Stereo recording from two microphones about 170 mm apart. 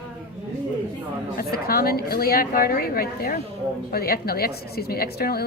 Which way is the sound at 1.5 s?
60° left (ahead or behind).